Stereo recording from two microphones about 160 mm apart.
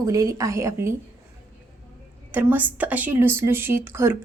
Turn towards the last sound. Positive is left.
turn(degrees=-15)  # may be behind; listen again after turning